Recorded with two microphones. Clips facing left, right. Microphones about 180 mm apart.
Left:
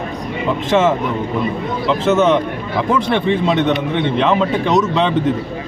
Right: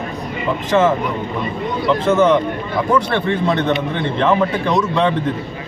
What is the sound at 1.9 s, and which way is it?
A man's voice, 25° left (ahead or behind).